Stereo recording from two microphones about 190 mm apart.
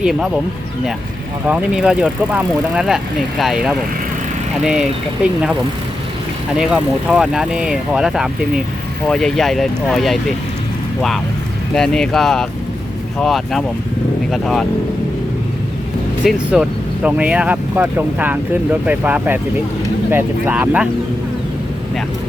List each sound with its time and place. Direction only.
0.0 s speech: 5° right (ahead or behind)
1.5 s speech: 5° right (ahead or behind)
6.6 s speech: 5° right (ahead or behind)
11.7 s speech: 5° left (ahead or behind)
16.2 s speech: 5° right (ahead or behind)